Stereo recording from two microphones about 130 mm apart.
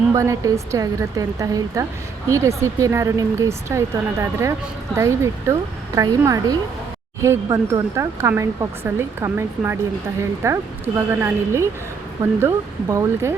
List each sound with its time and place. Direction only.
0.1 s speech: 25° right (ahead or behind)